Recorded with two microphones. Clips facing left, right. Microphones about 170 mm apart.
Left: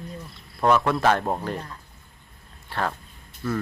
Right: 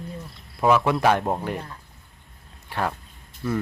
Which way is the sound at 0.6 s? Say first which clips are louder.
Right 1 dB; 5° right (ahead or behind).